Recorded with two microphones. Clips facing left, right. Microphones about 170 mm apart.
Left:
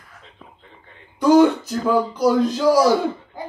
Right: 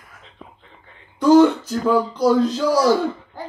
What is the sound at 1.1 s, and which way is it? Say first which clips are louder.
Speech: right 1 dB; 15° left (ahead or behind).